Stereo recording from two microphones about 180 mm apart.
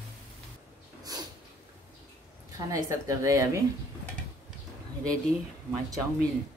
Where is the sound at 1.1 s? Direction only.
20° right (ahead or behind).